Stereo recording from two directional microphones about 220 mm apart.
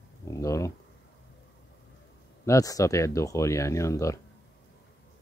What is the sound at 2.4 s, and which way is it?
Speech, 15° left (ahead or behind).